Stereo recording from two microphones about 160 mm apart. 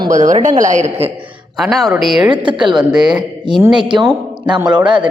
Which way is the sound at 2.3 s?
30° right (ahead or behind).